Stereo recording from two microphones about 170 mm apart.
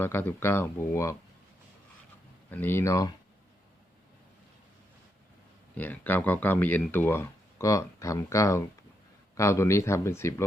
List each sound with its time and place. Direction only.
0.0 s speech: 10° left (ahead or behind)
2.5 s speech: 10° left (ahead or behind)
5.7 s speech: 10° left (ahead or behind)